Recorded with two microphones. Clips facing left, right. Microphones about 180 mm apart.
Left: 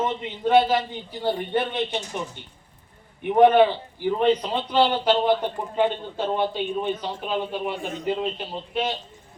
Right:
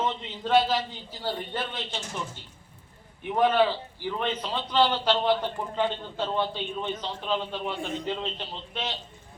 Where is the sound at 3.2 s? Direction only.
60° left (ahead or behind).